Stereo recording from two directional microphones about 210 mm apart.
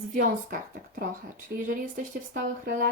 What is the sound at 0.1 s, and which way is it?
Speech, 40° right (ahead or behind).